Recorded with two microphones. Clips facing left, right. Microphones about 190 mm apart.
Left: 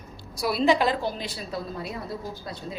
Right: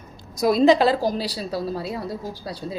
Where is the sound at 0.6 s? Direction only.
35° right (ahead or behind).